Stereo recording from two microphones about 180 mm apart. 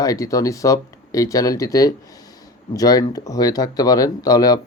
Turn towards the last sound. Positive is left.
turn(degrees=20)  # may be behind; listen again after turning